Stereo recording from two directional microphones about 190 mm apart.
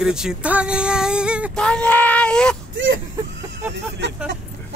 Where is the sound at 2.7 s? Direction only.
75° right (ahead or behind).